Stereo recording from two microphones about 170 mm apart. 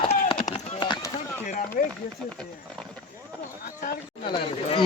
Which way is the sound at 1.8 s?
55° left (ahead or behind).